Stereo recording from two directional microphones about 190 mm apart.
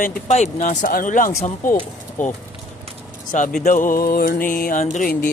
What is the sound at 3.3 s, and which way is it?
Speech, 45° left (ahead or behind).